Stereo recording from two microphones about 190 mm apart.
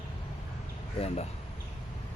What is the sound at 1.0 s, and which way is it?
Speech, 35° left (ahead or behind).